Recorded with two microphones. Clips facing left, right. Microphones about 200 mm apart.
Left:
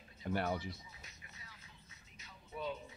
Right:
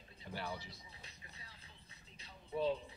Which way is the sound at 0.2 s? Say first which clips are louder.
Left 10 dB; 60° left (ahead or behind).